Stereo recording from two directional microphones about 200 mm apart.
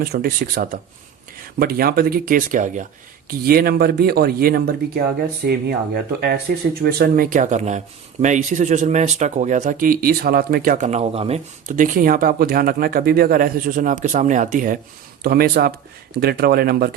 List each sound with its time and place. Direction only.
0.0 s speech: 45° right (ahead or behind); by 11.3 s 30° right (ahead or behind)
11.8 s speech: 45° right (ahead or behind)